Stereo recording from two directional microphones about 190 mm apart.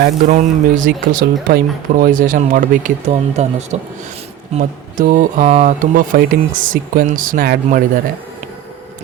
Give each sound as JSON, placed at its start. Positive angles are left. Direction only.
{"t": 0.0, "sound": "speech", "side_deg": -45}